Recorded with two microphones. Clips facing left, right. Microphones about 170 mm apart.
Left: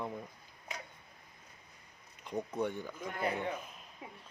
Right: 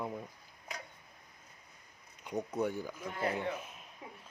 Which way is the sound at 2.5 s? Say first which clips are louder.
Right 2 dB; 5° right (ahead or behind).